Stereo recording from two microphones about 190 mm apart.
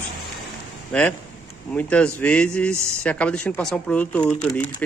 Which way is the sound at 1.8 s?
5° left (ahead or behind).